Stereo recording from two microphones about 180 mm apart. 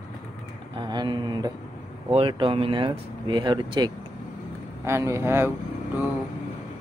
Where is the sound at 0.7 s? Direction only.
25° right (ahead or behind).